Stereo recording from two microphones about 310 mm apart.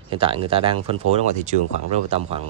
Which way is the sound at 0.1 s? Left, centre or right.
Centre.